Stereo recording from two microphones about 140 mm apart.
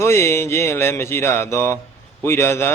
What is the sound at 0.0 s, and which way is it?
Mantra, 20° left (ahead or behind).